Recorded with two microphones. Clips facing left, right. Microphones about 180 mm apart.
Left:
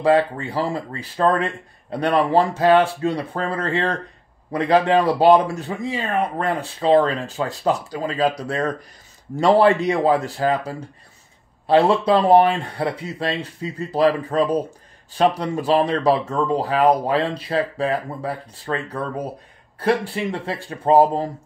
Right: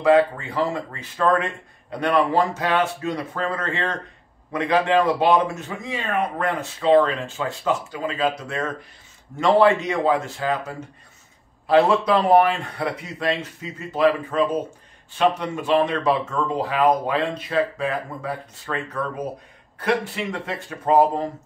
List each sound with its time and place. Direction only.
0.0 s speech: 30° left (ahead or behind)